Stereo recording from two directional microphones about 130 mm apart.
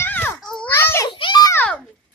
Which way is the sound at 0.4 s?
5° left (ahead or behind).